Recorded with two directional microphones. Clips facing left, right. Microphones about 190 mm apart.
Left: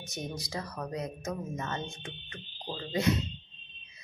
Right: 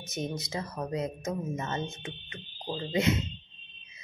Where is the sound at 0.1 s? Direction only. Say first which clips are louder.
Right 4 dB; 20° right (ahead or behind).